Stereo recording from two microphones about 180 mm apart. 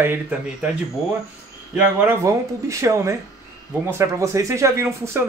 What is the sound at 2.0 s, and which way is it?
Speech, 15° right (ahead or behind).